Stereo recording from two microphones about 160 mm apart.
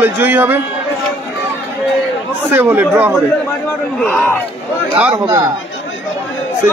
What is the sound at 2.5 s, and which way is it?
Speech, 10° right (ahead or behind).